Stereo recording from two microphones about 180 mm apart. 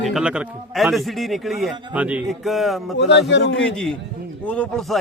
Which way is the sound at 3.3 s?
80° left.